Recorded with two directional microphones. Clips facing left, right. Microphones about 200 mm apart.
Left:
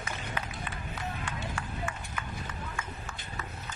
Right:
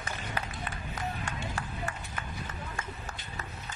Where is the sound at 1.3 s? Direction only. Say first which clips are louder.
Even; 40° right (ahead or behind).